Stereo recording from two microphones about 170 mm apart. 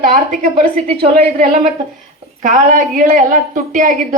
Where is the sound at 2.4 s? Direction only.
50° right (ahead or behind).